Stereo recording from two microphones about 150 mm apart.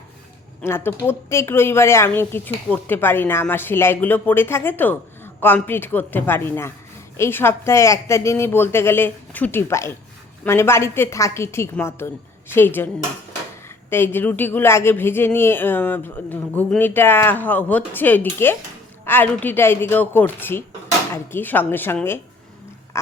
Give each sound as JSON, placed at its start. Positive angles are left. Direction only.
{"t": 0.6, "sound": "a woman's voice", "side_deg": 15}
{"t": 13.9, "sound": "a woman's voice", "side_deg": 15}